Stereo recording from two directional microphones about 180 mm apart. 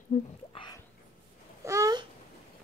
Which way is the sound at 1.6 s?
20° right (ahead or behind).